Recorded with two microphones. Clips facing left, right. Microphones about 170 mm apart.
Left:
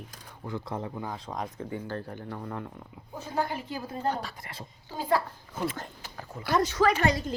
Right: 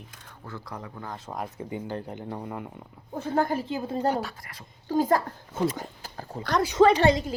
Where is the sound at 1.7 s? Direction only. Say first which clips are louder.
Right 2 dB; 20° right (ahead or behind).